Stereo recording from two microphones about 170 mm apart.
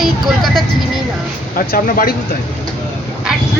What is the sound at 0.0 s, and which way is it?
Speech, centre (ahead or behind).